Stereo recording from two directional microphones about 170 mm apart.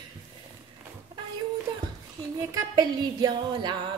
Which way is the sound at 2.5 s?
20° right (ahead or behind).